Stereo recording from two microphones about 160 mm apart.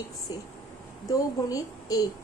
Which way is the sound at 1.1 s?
20° left (ahead or behind).